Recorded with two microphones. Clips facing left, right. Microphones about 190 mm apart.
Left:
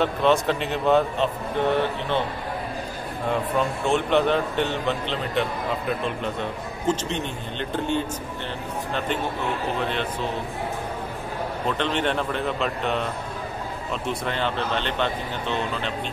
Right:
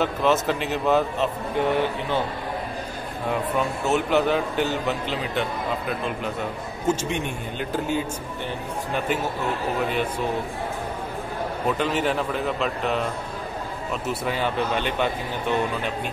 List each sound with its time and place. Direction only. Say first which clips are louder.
0.0 s a man's voice: left 1 dB; centre (ahead or behind)
3.3 s a man's voice: left 1 dB; 5° right (ahead or behind)
11.6 s a man's voice: right 1 dB; 5° right (ahead or behind)
14.0 s speech: right 1 dB; 5° right (ahead or behind)